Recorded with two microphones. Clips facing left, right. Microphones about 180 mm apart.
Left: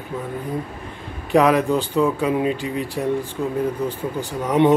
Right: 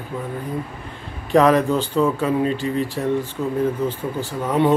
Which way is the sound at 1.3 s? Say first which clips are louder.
Right 1 dB; 10° left (ahead or behind).